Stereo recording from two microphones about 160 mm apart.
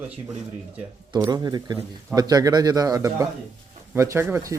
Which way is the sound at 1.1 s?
20° right (ahead or behind).